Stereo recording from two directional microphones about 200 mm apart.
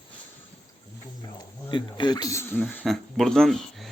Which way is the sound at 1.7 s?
20° left (ahead or behind).